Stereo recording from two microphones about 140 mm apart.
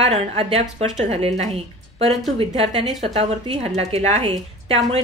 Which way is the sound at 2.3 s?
50° right (ahead or behind).